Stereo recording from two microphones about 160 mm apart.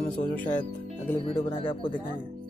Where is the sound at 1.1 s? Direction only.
35° left (ahead or behind).